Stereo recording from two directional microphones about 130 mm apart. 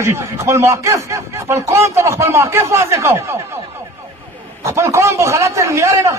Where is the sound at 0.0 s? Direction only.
20° right (ahead or behind).